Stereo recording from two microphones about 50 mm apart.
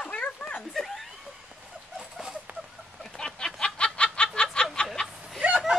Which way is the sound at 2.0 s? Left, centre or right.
Centre.